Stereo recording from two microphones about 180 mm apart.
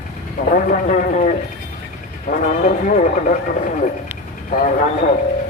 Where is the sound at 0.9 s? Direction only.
40° left (ahead or behind).